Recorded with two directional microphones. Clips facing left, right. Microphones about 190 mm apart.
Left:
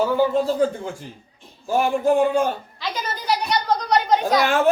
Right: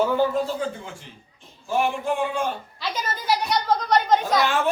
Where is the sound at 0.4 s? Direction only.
40° left (ahead or behind).